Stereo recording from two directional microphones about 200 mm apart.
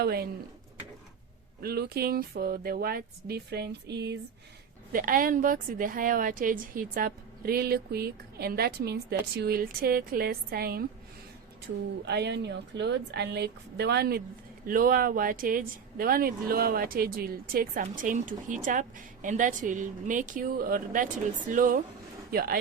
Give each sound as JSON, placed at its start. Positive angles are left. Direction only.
{"t": 0.0, "sound": "speech", "side_deg": -50}
{"t": 1.6, "sound": "speech", "side_deg": -50}
{"t": 4.9, "sound": "speech", "side_deg": -45}
{"t": 12.0, "sound": "a woman's voice", "side_deg": -55}